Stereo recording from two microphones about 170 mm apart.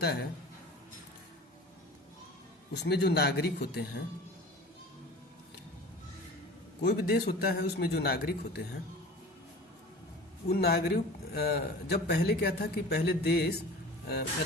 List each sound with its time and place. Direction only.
0.0 s speech: 70° left (ahead or behind)
2.7 s speech: 75° left (ahead or behind)
6.8 s speech: 65° left (ahead or behind)
10.5 s speech: 65° left (ahead or behind)